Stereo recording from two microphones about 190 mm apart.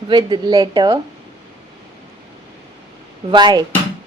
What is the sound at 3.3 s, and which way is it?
Speech, 25° right (ahead or behind).